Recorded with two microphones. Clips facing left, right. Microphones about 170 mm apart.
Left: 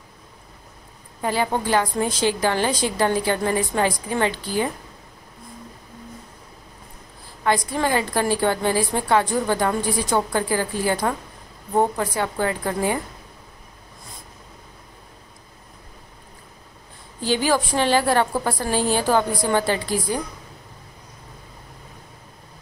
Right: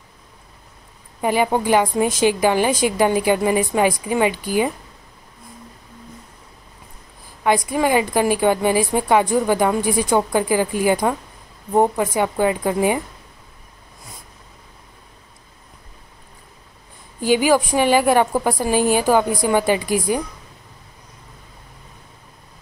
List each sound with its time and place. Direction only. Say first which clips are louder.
1.2 s a woman's voice: right 4 dB; 15° right (ahead or behind)
7.4 s a woman's voice: right 4 dB; 15° right (ahead or behind)
17.2 s a woman's voice: right 5 dB; 15° right (ahead or behind)